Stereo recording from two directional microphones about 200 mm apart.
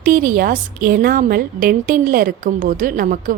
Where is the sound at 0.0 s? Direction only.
45° right (ahead or behind).